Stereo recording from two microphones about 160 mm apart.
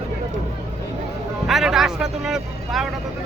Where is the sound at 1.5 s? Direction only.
Centre (ahead or behind).